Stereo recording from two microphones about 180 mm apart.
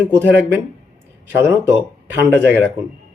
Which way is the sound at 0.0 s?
10° right (ahead or behind).